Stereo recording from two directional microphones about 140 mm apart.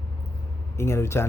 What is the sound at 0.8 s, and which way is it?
Speech, 20° left (ahead or behind).